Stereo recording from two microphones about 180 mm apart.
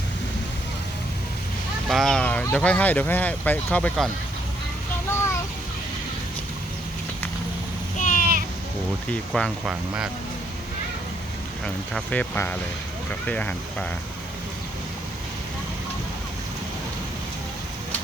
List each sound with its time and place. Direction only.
1.9 s speech: centre (ahead or behind)
7.9 s a sound: 45° left (ahead or behind)
9.0 s speech: 5° left (ahead or behind)
11.6 s speech: 5° left (ahead or behind)